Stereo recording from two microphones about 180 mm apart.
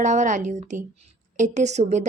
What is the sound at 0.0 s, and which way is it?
Speech, 45° right (ahead or behind).